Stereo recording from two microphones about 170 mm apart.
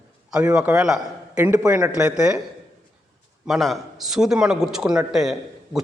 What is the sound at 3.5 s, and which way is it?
A man's voice, centre (ahead or behind).